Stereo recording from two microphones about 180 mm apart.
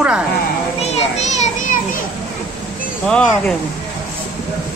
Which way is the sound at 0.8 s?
35° left (ahead or behind).